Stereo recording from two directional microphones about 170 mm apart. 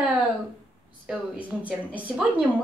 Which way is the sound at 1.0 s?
10° right (ahead or behind).